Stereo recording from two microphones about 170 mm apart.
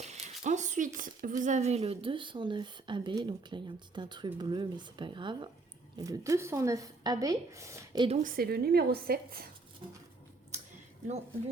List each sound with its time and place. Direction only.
0.0 s a sound: 40° right (ahead or behind)
0.9 s a woman's voice: 50° right (ahead or behind); by 8.0 s 15° right (ahead or behind)
8.2 s a woman's voice: 55° right (ahead or behind)